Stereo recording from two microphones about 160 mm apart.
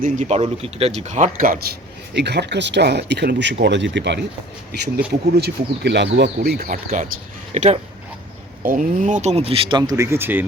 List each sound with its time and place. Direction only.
0.0 s a man's voice: 55° right (ahead or behind)
0.3 s a man's voice: 40° right (ahead or behind); by 1.7 s 70° right (ahead or behind)
2.1 s speech: 90° right
5.4 s speech: 90° right
7.5 s a man's voice: 45° right (ahead or behind); by 10.4 s 15° right (ahead or behind)